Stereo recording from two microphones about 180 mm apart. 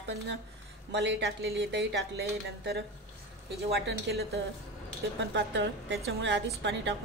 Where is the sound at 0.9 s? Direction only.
75° right (ahead or behind).